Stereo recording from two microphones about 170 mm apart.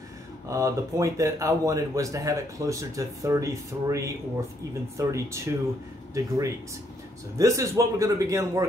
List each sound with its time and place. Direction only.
0.5 s a man's voice: 20° right (ahead or behind)